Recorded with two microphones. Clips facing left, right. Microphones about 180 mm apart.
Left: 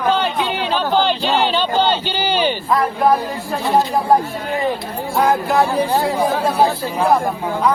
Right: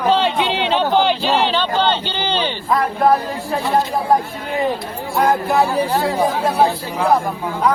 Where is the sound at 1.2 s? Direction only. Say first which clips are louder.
Even; centre (ahead or behind).